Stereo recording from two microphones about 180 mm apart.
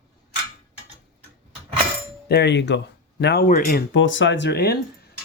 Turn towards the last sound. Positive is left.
turn(degrees=60)  # may be behind; listen again after turning